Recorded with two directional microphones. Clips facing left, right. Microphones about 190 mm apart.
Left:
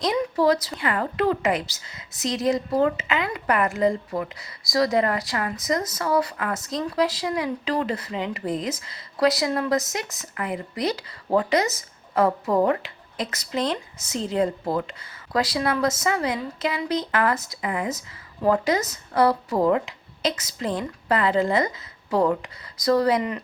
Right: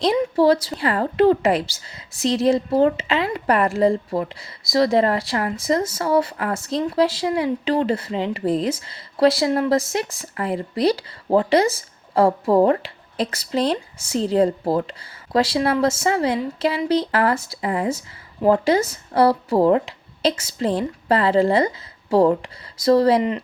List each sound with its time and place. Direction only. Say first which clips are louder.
0.0 s a woman's voice: right 4 dB; 30° right (ahead or behind)